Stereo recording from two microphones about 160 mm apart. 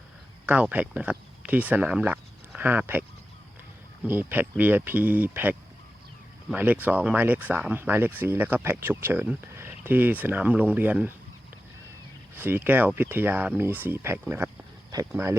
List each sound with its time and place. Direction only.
0.4 s speech: 10° right (ahead or behind)
4.0 s speech: 10° right (ahead or behind)
12.3 s speech: 10° right (ahead or behind)